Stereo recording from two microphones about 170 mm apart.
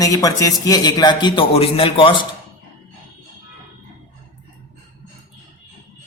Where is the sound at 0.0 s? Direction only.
20° left (ahead or behind).